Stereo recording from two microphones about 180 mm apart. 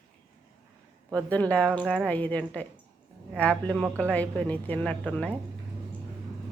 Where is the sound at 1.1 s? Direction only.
10° left (ahead or behind).